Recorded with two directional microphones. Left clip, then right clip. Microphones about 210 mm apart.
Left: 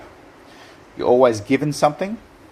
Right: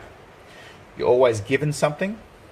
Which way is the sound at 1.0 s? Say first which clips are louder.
Left 3 dB; 30° left (ahead or behind).